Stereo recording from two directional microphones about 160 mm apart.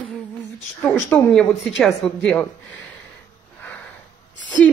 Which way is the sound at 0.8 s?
5° left (ahead or behind).